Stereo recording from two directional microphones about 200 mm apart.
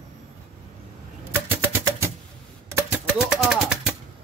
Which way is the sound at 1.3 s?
10° right (ahead or behind).